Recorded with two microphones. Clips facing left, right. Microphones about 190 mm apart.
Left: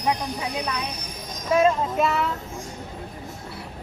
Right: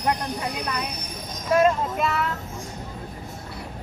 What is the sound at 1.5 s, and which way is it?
Speech, centre (ahead or behind).